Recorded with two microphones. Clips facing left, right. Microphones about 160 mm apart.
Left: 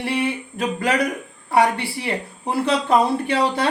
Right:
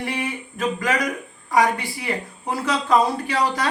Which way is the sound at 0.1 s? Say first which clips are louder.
Left 5 dB; 30° left (ahead or behind).